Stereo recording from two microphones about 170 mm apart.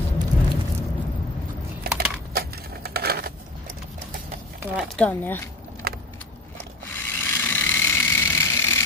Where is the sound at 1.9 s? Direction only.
65° right (ahead or behind).